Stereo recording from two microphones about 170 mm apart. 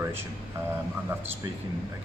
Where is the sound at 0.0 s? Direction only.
15° right (ahead or behind).